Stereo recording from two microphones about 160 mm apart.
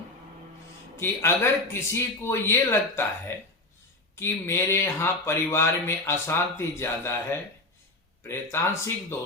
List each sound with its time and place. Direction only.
0.9 s speech: 15° left (ahead or behind)